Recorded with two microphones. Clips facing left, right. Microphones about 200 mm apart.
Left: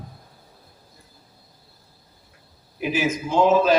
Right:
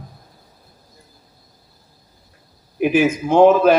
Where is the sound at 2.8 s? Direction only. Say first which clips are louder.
Right 8 dB; 55° right (ahead or behind).